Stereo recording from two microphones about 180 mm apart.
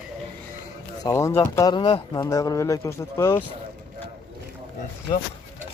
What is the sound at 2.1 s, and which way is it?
Speech, 20° left (ahead or behind).